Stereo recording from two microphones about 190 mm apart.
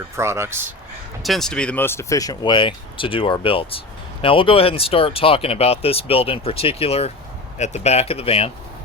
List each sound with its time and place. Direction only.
0.2 s speech: 15° right (ahead or behind)
1.2 s speech: centre (ahead or behind); by 8.4 s 30° left (ahead or behind)